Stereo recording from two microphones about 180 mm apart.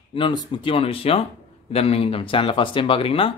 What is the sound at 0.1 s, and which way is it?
Speech, 25° left (ahead or behind).